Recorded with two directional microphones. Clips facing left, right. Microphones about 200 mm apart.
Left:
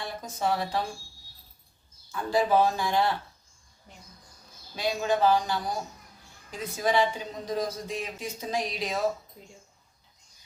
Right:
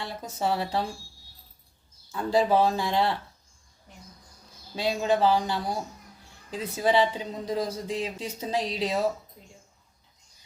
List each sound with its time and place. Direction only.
0.0 s a woman's voice: 30° right (ahead or behind)
2.1 s a woman's voice: 30° right (ahead or behind)
4.7 s a woman's voice: 25° right (ahead or behind)